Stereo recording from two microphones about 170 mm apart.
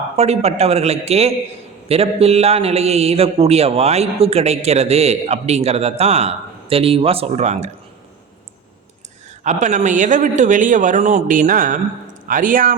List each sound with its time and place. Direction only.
0.2 s a man's voice: 40° right (ahead or behind)
9.4 s a man's voice: 45° right (ahead or behind)